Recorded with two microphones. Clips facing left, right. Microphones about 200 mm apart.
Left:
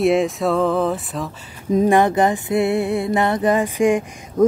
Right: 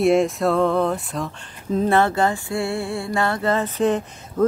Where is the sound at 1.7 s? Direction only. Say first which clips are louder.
Left 4 dB; 15° left (ahead or behind).